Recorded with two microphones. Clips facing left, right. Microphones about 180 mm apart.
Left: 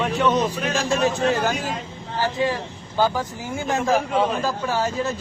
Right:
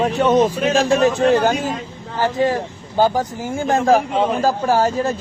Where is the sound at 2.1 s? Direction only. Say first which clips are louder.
Right 5 dB; 45° right (ahead or behind).